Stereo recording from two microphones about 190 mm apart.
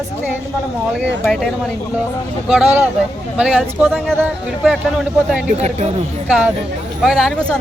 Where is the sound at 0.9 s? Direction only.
Centre (ahead or behind).